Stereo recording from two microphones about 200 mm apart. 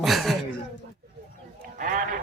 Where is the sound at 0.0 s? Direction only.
Centre (ahead or behind).